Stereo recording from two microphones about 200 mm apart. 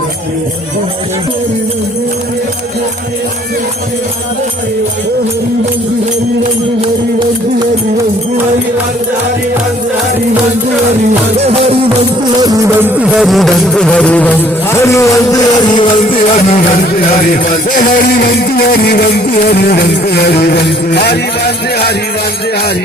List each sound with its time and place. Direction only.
6.4 s music: 30° right (ahead or behind)
11.3 s music: 30° right (ahead or behind)
12.4 s music: 15° right (ahead or behind); by 16.1 s 25° left (ahead or behind)
17.2 s speech: 40° left (ahead or behind)